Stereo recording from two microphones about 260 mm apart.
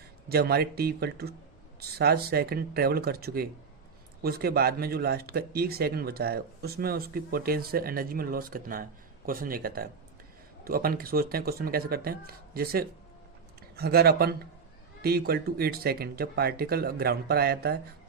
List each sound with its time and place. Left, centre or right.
0.3 s speech: right